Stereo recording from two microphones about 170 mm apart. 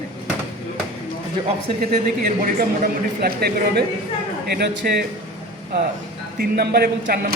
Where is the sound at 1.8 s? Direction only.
55° right (ahead or behind).